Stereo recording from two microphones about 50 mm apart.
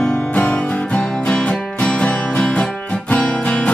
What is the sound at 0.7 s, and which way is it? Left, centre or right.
Music, centre.